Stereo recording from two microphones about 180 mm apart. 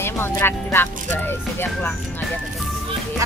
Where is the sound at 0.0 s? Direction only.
15° left (ahead or behind).